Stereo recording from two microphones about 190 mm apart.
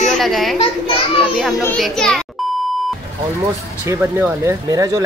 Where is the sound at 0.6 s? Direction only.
30° left (ahead or behind).